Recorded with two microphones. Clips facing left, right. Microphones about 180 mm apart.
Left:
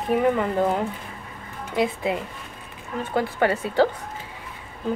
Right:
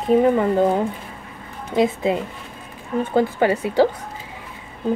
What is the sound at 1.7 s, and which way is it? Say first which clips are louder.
Speech: right 5 dB; 25° right (ahead or behind).